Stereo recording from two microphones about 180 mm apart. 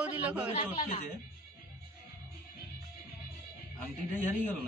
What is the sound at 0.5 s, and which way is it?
Speech, 30° left (ahead or behind).